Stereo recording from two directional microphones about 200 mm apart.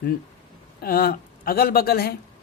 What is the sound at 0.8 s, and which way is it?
A man's voice, 50° left (ahead or behind).